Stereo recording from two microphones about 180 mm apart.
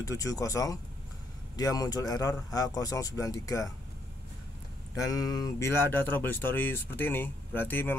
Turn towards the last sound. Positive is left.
turn(degrees=10)  # may be behind; listen again after turning